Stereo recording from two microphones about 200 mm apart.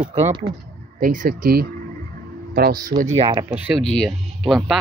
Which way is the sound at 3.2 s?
20° right (ahead or behind).